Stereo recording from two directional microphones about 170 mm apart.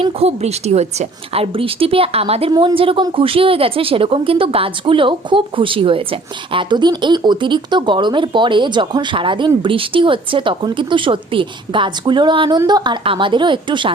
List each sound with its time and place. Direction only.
0.0 s a woman's voice: 35° right (ahead or behind)